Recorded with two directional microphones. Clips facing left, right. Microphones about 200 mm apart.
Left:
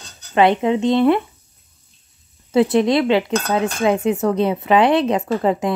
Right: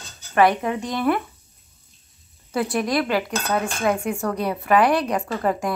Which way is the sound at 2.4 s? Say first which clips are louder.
Left 8 dB; 25° left (ahead or behind).